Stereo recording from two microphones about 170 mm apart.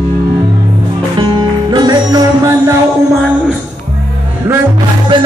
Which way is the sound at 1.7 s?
25° right (ahead or behind).